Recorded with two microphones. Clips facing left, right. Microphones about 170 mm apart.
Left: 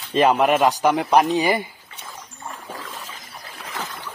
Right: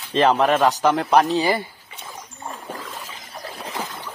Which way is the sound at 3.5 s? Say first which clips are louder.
Right 2 dB; 30° right (ahead or behind).